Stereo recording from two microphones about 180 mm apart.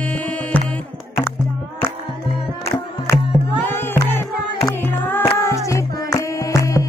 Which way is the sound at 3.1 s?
15° left (ahead or behind).